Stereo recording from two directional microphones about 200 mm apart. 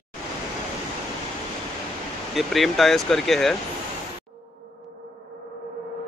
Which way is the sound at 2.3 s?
Centre (ahead or behind).